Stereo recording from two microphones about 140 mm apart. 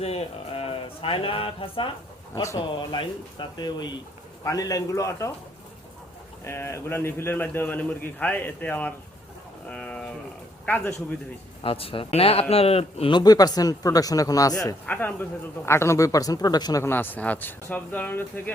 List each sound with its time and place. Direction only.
0.0 s speech: 45° left (ahead or behind)
2.3 s speech: 20° left (ahead or behind)
2.9 s speech: 35° left (ahead or behind)
6.4 s a man's voice: 20° left (ahead or behind)
11.6 s speech: 40° left (ahead or behind)
13.1 s speech: 30° left (ahead or behind)
14.8 s speech: 15° left (ahead or behind); by 16.8 s 30° left (ahead or behind)
16.8 s a man's voice: 15° left (ahead or behind)